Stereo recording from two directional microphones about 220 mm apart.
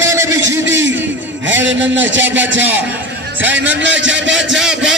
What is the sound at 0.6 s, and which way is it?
A man's voice, 55° right (ahead or behind).